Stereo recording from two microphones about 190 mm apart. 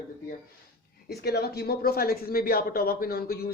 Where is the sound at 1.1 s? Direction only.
55° left (ahead or behind).